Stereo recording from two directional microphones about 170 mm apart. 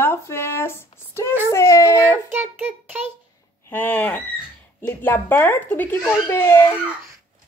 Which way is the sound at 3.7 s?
10° left (ahead or behind).